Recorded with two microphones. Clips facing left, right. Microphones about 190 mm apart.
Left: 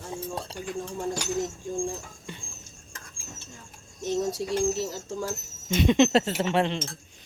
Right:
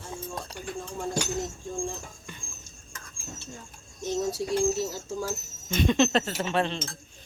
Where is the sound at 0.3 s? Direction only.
30° left (ahead or behind).